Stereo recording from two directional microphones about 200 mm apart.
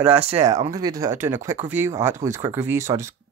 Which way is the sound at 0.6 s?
20° right (ahead or behind).